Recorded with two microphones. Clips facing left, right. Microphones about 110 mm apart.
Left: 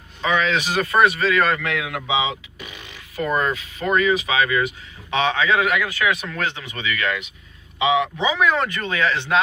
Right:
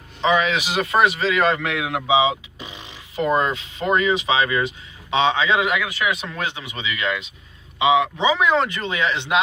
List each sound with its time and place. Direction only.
0.2 s speech: 25° right (ahead or behind)
0.4 s a man's voice: 15° right (ahead or behind)